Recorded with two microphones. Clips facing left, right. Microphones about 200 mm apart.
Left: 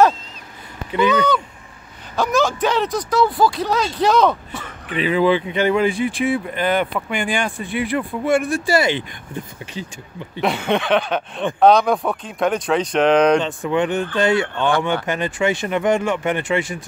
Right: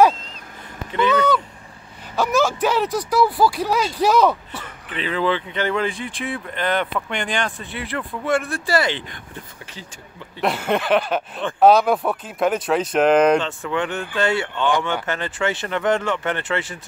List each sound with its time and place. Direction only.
0.9 s speech: 15° left (ahead or behind)
2.1 s speech: 5° right (ahead or behind)
4.8 s speech: 10° left (ahead or behind)
10.4 s speech: 5° right (ahead or behind)
13.4 s speech: 15° left (ahead or behind)